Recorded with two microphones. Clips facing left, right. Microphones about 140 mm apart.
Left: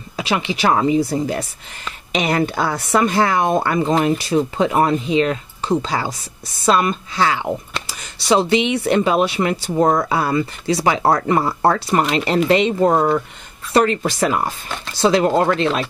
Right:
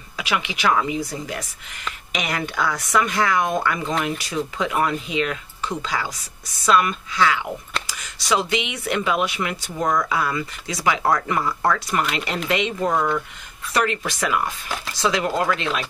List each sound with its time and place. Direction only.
0.1 s speech: 30° left (ahead or behind)